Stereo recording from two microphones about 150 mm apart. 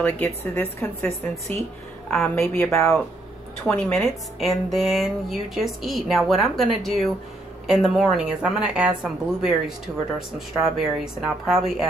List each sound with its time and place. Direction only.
0.0 s a woman's voice: 15° left (ahead or behind)
3.6 s speech: 5° left (ahead or behind)